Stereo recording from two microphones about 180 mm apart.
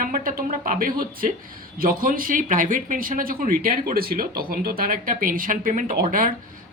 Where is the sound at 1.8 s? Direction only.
50° right (ahead or behind).